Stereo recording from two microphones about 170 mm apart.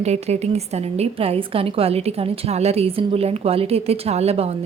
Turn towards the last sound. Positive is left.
turn(degrees=-35)  # may be behind; listen again after turning